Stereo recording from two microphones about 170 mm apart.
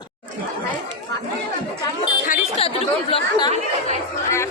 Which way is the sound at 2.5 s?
35° left (ahead or behind).